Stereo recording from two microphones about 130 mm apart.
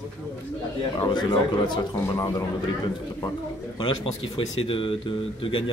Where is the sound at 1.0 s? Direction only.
35° left (ahead or behind).